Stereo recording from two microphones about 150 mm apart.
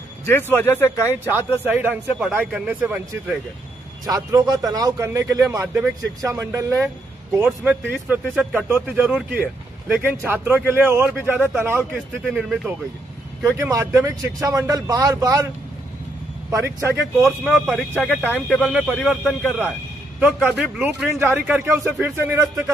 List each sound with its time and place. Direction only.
0.2 s speech: 15° left (ahead or behind)
1.5 s a man's voice: 15° right (ahead or behind)
4.0 s a man's voice: 25° right (ahead or behind); by 12.7 s 5° right (ahead or behind)
13.5 s a man's voice: 20° right (ahead or behind)
17.5 s a man's voice: centre (ahead or behind); by 22.7 s 15° right (ahead or behind)